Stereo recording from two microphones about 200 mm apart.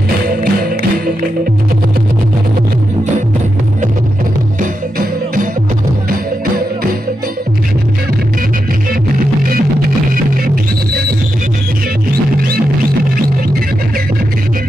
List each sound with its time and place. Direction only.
0.4 s music: 45° right (ahead or behind)
4.6 s music: 45° right (ahead or behind)
10.4 s music: 45° right (ahead or behind)